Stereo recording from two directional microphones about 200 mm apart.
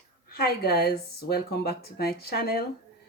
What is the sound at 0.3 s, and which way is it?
A woman's voice, 50° left (ahead or behind).